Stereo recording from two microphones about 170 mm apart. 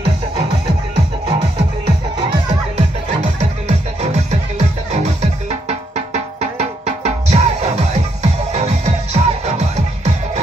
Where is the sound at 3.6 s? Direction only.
40° right (ahead or behind).